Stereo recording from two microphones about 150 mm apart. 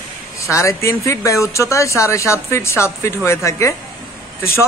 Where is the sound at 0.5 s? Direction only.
20° left (ahead or behind).